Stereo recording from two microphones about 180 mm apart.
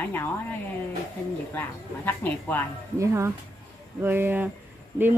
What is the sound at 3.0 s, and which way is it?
Speech, 15° right (ahead or behind).